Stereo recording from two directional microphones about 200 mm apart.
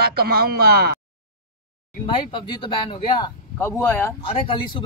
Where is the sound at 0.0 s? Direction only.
50° right (ahead or behind).